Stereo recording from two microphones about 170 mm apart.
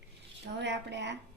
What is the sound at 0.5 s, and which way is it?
Speech, 90° right.